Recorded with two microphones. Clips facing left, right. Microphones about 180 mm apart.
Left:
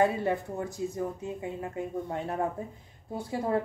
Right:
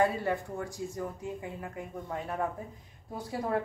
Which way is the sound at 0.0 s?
20° left (ahead or behind).